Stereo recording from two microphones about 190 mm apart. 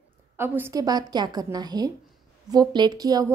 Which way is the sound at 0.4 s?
15° right (ahead or behind).